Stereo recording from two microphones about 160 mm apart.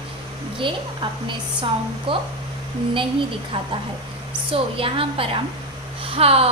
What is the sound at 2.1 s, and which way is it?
Speech, 35° right (ahead or behind).